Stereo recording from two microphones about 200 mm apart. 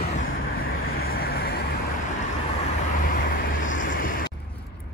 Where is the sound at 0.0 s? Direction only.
40° left (ahead or behind).